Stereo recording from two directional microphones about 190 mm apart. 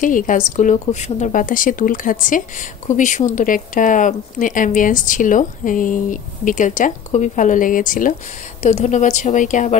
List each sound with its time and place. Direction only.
0.0 s a woman's voice: 45° left (ahead or behind)